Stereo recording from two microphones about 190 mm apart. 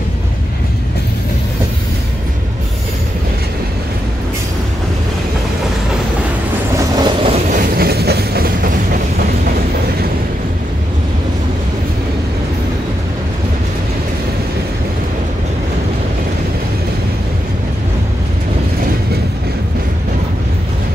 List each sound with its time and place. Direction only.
7.0 s train: 25° right (ahead or behind)
7.5 s train: 55° right (ahead or behind)